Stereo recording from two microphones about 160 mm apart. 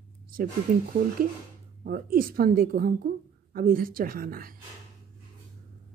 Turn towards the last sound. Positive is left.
turn(degrees=-65)  # may be behind; listen again after turning